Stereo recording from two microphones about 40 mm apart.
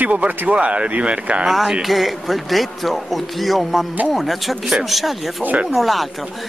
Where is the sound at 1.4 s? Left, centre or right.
Centre.